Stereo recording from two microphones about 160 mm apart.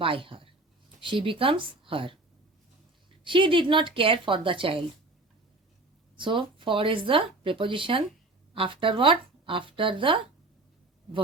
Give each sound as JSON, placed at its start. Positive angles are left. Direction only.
{"t": 0.0, "sound": "a woman's voice", "side_deg": -35}
{"t": 3.2, "sound": "a woman's voice", "side_deg": -30}
{"t": 6.1, "sound": "a woman's voice", "side_deg": -30}